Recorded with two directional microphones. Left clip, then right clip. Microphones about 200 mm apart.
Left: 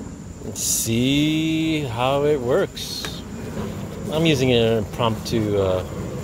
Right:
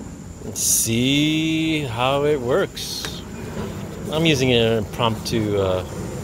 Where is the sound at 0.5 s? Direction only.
Centre (ahead or behind).